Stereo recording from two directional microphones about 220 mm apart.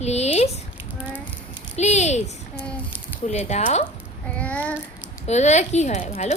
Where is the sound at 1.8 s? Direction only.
30° left (ahead or behind).